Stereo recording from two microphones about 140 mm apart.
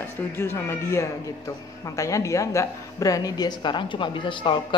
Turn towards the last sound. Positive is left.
turn(degrees=35)  # may be behind; listen again after turning